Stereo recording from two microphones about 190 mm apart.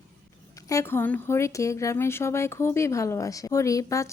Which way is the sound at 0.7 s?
15° left (ahead or behind).